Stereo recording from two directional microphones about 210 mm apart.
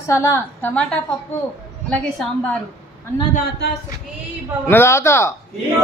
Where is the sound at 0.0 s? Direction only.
15° left (ahead or behind).